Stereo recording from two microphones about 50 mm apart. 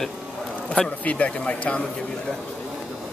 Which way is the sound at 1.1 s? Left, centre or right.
Left.